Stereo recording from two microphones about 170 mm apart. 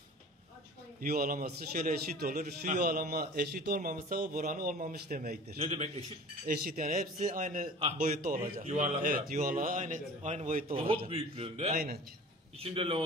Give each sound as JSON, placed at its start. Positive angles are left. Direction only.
{"t": 1.0, "sound": "a man's voice", "side_deg": -60}
{"t": 2.8, "sound": "a man's voice", "side_deg": -65}
{"t": 5.6, "sound": "a man's voice", "side_deg": -35}
{"t": 6.4, "sound": "a man's voice", "side_deg": -60}
{"t": 10.7, "sound": "a man's voice", "side_deg": -35}